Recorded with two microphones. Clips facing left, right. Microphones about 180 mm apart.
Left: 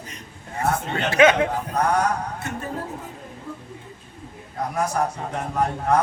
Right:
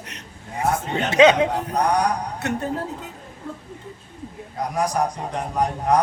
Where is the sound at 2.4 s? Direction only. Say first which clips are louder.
Right 6 dB; 70° right (ahead or behind).